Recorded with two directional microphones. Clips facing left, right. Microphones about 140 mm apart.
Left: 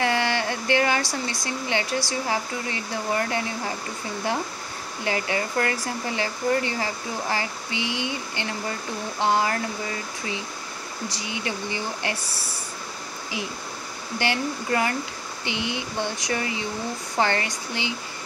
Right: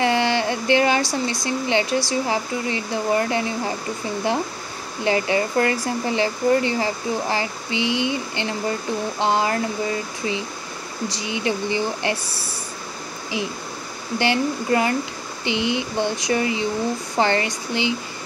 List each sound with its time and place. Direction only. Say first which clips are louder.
0.0 s a sound: right 4 dB; 25° right (ahead or behind)
1.2 s speech: right 6 dB; 20° right (ahead or behind)
5.0 s speech: right 6 dB; 25° right (ahead or behind)
11.1 s speech: right 7 dB; 25° right (ahead or behind)
14.1 s speech: right 5 dB; 20° right (ahead or behind)